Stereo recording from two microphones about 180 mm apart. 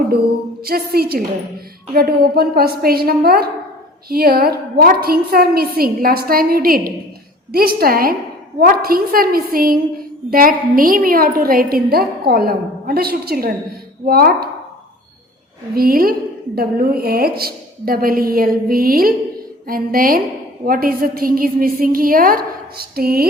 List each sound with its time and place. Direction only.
0.6 s a woman's voice: 60° right (ahead or behind)
15.7 s a woman's voice: 55° right (ahead or behind)